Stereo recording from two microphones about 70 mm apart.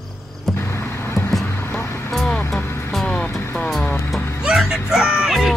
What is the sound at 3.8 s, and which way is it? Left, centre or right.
Music, left.